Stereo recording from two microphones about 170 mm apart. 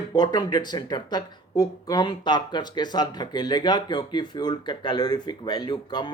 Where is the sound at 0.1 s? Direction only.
25° left (ahead or behind).